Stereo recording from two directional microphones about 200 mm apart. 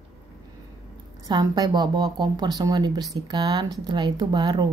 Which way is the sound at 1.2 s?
20° right (ahead or behind).